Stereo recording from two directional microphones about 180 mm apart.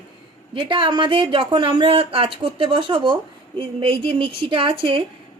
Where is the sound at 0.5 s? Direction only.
30° right (ahead or behind).